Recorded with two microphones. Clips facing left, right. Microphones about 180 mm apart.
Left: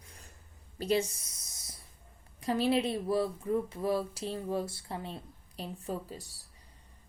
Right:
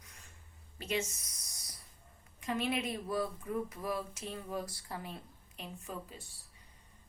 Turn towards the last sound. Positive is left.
turn(degrees=40)  # may be behind; listen again after turning